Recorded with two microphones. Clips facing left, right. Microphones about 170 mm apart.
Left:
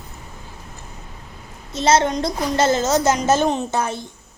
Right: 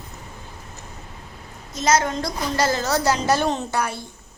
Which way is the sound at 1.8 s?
30° left (ahead or behind).